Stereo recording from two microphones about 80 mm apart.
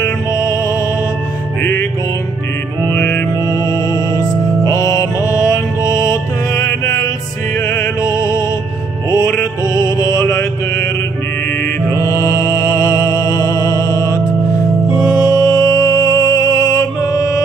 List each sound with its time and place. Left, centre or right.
0.0 s music: left
2.9 s music: left
3.4 s music: left
9.3 s mantra: left
12.0 s music: left